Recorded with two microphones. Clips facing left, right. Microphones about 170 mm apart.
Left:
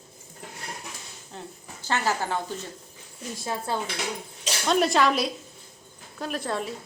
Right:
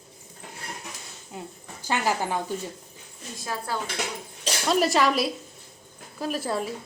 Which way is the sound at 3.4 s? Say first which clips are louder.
Left 1 dB; 25° left (ahead or behind).